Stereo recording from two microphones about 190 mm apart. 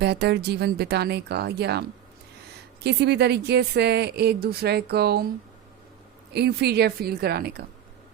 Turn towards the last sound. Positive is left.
turn(degrees=-55)  # may be behind; listen again after turning